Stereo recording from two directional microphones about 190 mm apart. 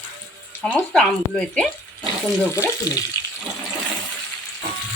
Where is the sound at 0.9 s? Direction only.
5° left (ahead or behind).